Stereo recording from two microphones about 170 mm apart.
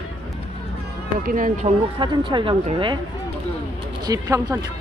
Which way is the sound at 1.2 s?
55° right (ahead or behind).